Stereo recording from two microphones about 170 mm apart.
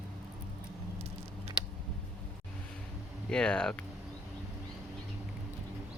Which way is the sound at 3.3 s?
5° left (ahead or behind).